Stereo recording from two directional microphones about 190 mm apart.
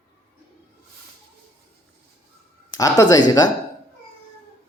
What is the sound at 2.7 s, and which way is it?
Speech, 20° left (ahead or behind).